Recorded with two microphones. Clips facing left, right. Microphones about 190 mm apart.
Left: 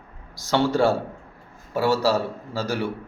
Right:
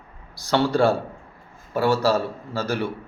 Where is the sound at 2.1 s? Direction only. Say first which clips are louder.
Right 1 dB; 15° left (ahead or behind).